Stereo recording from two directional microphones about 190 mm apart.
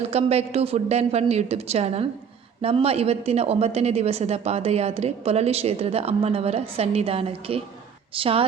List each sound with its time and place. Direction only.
0.1 s a woman's voice: 35° right (ahead or behind)